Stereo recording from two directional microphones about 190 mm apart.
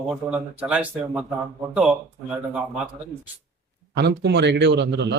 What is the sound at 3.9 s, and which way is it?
A man's voice, 60° right (ahead or behind).